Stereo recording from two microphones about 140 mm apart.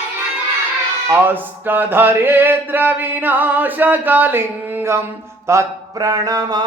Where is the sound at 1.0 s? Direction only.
15° right (ahead or behind).